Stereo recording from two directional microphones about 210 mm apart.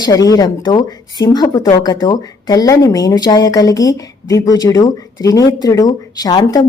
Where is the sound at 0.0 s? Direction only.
15° left (ahead or behind).